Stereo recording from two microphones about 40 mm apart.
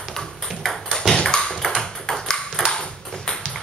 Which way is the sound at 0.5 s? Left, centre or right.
Centre.